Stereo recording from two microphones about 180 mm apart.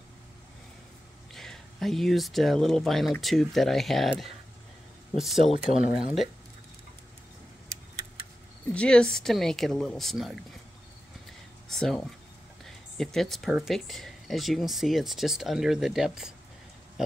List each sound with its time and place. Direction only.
1.3 s speech: centre (ahead or behind)
5.5 s speech: 45° left (ahead or behind)
8.7 s speech: 5° left (ahead or behind)
11.7 s speech: centre (ahead or behind)